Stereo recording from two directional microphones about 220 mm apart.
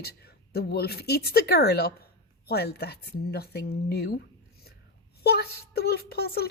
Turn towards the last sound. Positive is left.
turn(degrees=45)  # may be behind; listen again after turning